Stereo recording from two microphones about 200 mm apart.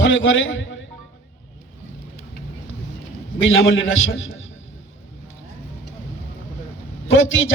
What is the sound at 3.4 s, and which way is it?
Speech, 75° left (ahead or behind).